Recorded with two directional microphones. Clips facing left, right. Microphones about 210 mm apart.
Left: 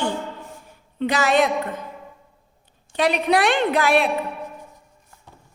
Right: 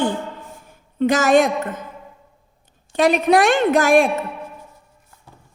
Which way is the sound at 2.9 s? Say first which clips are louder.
Right 4 dB; 45° right (ahead or behind).